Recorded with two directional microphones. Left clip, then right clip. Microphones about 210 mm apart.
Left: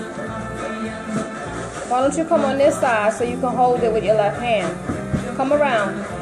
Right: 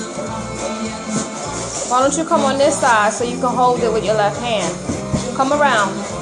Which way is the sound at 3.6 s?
20° right (ahead or behind).